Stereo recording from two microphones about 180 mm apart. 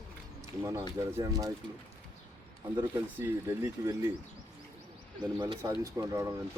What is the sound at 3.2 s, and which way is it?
Speech, 15° right (ahead or behind).